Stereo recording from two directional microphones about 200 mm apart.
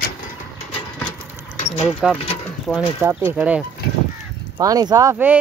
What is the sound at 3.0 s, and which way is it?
Speech, 10° right (ahead or behind).